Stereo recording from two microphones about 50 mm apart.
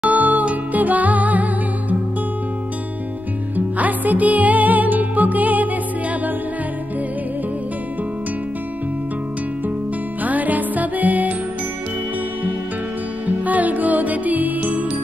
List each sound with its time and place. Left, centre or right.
0.0 s music: right
3.5 s music: right
10.2 s music: right
13.5 s music: right